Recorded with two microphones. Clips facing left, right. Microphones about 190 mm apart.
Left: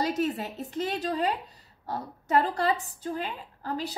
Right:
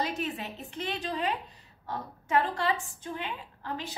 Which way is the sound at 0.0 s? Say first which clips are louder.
Left 5 dB; 40° left (ahead or behind).